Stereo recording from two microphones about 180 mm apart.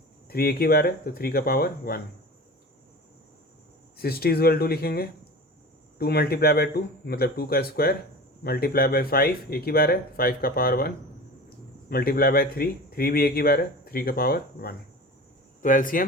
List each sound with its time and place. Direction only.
0.3 s speech: 55° left (ahead or behind)
3.9 s speech: 60° left (ahead or behind)